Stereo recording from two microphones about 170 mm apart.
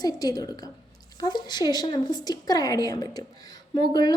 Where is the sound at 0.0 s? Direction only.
20° left (ahead or behind).